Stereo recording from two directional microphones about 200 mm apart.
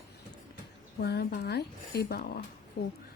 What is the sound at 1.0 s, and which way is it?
A woman's voice, 55° left (ahead or behind).